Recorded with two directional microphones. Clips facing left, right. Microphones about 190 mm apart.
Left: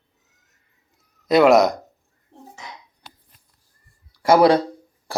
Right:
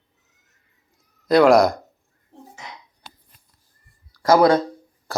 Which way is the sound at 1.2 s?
Centre (ahead or behind).